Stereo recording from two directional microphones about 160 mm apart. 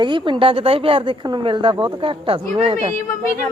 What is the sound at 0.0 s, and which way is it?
Speech, 30° right (ahead or behind).